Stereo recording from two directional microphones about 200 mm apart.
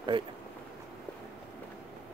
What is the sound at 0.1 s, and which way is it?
Speech, 25° right (ahead or behind).